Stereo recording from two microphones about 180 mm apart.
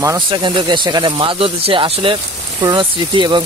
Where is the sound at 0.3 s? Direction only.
30° right (ahead or behind).